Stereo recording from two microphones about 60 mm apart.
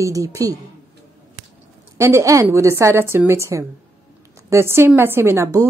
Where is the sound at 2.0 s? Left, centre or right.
Right.